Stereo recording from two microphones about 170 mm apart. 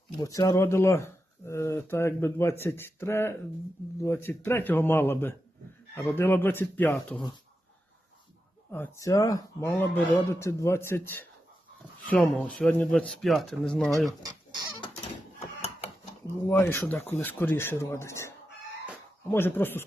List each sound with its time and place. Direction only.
0.2 s speech: 20° left (ahead or behind)
8.7 s speech: 15° left (ahead or behind)
15.4 s mechanisms: 40° left (ahead or behind)
16.5 s speech: 15° left (ahead or behind)